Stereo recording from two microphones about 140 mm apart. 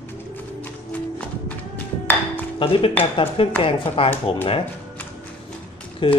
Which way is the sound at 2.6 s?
40° left (ahead or behind).